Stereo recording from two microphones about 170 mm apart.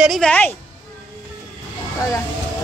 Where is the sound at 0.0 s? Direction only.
Centre (ahead or behind).